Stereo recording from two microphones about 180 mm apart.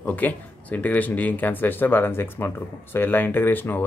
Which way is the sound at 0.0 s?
10° left (ahead or behind).